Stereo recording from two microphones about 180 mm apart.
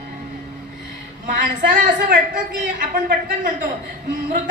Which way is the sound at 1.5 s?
45° right (ahead or behind).